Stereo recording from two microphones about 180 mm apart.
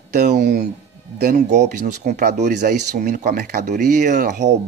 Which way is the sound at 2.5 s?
65° right (ahead or behind).